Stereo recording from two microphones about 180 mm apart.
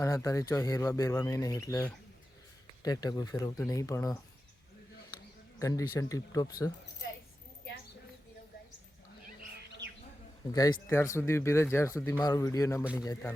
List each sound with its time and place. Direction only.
0.0 s speech: 20° left (ahead or behind)
5.5 s speech: 15° left (ahead or behind)
10.5 s speech: 20° left (ahead or behind)